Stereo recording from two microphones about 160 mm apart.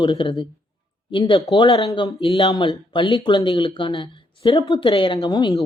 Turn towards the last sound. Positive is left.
turn(degrees=25)  # may be behind; listen again after turning